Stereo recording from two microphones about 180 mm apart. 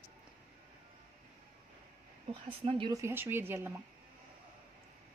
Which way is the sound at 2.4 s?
30° right (ahead or behind).